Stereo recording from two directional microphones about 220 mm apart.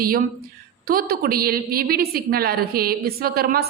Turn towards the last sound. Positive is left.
turn(degrees=-45)  # may be behind; listen again after turning